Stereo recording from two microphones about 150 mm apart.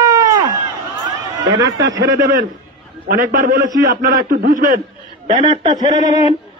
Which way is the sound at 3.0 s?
75° right (ahead or behind).